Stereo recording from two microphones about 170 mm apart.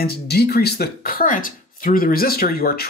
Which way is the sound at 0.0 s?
70° left (ahead or behind).